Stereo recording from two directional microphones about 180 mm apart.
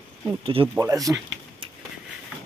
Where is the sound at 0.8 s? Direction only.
20° right (ahead or behind).